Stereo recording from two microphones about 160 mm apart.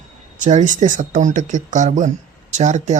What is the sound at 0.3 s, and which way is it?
Speech, 50° right (ahead or behind).